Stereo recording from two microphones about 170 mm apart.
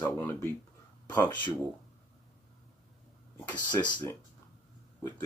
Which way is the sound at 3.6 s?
25° left (ahead or behind).